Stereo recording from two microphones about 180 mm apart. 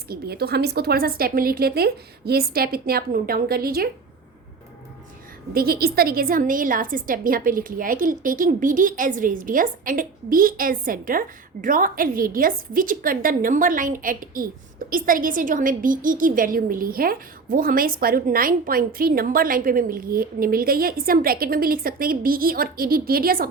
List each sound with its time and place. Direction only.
0.1 s a woman's voice: 60° right (ahead or behind)
5.5 s a woman's voice: 55° right (ahead or behind)